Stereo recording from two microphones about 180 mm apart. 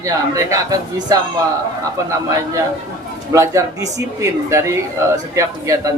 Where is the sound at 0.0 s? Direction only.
20° right (ahead or behind).